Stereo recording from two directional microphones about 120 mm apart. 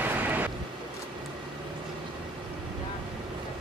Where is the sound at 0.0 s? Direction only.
15° right (ahead or behind).